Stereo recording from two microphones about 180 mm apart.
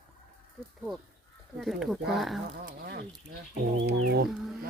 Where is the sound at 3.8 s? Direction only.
65° right (ahead or behind).